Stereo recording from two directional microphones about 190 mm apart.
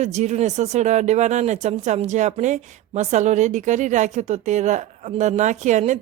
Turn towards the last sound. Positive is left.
turn(degrees=-40)  # may be behind; listen again after turning